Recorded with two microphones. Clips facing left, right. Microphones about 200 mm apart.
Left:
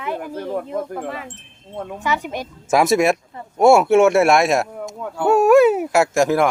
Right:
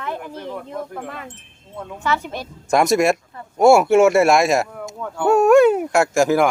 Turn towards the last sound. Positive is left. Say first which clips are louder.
# even
turn(degrees=0)  # may be behind; listen again after turning